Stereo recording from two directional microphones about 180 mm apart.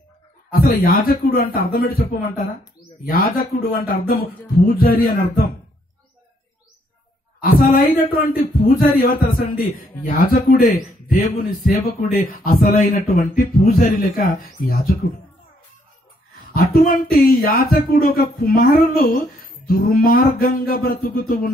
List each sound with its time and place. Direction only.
0.5 s speech: 55° left (ahead or behind)
7.4 s speech: 50° left (ahead or behind)
16.3 s speech: 55° left (ahead or behind)